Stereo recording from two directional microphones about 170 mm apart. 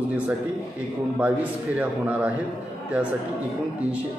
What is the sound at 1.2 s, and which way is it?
A man's voice, 10° right (ahead or behind).